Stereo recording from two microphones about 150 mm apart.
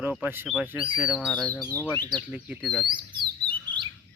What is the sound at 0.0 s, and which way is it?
Speech, 10° right (ahead or behind).